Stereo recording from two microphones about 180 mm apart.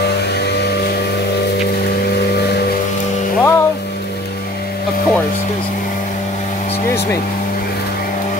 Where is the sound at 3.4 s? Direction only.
15° left (ahead or behind).